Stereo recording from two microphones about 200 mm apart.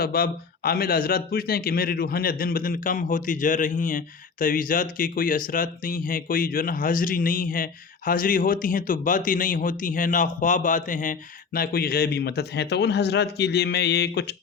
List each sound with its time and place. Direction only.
0.0 s a man's voice: 50° left (ahead or behind)